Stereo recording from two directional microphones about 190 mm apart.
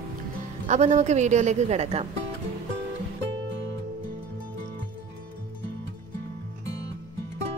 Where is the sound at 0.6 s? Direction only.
35° right (ahead or behind).